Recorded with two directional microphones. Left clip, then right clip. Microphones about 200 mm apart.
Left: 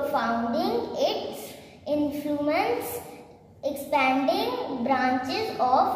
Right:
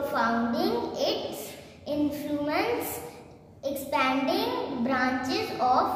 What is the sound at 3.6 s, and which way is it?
A woman's voice, 20° right (ahead or behind).